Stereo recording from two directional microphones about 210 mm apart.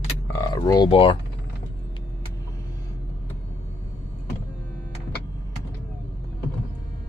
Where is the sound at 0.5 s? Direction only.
20° left (ahead or behind).